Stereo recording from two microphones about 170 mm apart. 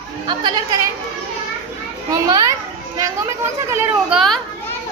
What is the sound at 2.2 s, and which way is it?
Speech, 20° right (ahead or behind).